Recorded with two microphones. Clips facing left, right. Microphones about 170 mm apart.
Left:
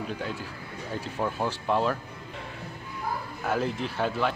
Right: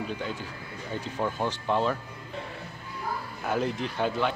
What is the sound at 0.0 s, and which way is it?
Speech, centre (ahead or behind).